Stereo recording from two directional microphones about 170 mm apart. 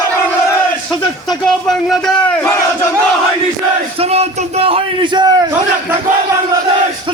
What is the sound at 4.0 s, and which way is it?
A man's voice, 35° right (ahead or behind).